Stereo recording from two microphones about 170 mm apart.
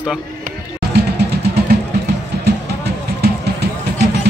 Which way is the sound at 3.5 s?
75° right (ahead or behind).